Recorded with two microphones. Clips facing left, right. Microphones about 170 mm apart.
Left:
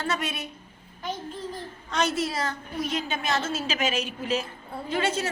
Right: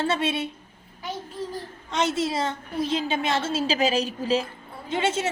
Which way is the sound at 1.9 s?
25° right (ahead or behind).